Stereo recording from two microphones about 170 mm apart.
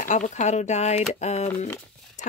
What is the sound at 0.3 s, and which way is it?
A woman's voice, 45° left (ahead or behind).